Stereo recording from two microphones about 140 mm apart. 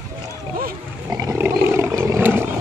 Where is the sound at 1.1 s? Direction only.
20° right (ahead or behind).